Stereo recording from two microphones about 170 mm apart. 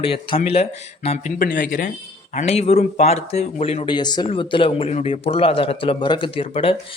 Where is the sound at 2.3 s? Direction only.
40° left (ahead or behind).